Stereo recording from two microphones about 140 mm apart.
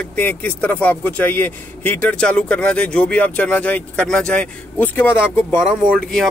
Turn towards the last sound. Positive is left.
turn(degrees=15)  # may be behind; listen again after turning